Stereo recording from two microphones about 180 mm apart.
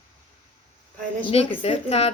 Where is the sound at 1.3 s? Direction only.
30° left (ahead or behind).